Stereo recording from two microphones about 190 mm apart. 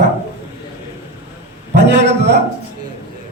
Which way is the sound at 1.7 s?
65° right (ahead or behind).